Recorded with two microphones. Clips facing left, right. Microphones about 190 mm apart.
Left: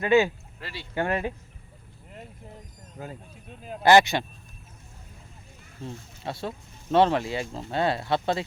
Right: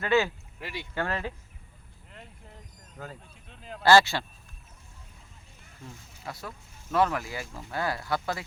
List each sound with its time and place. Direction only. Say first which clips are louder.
0.0 s speech: left 4 dB; 15° left (ahead or behind)
0.6 s speech: right 2 dB; 15° right (ahead or behind)
0.9 s speech: left 5 dB; 15° left (ahead or behind)
3.8 s speech: left 2 dB; 20° left (ahead or behind)
5.8 s speech: left 7 dB; 30° left (ahead or behind)